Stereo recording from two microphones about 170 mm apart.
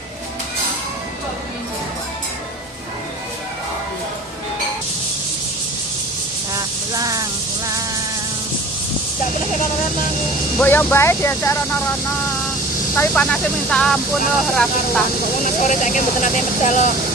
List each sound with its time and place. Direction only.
6.5 s a sound: 20° right (ahead or behind)
10.6 s speech: 10° left (ahead or behind)
12.9 s speech: 10° left (ahead or behind)
15.4 s speech: 45° left (ahead or behind)